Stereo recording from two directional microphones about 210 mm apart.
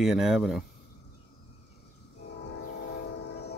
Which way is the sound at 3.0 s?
50° left (ahead or behind).